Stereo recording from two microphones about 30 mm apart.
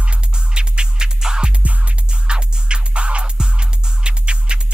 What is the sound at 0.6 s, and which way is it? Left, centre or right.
Music, right.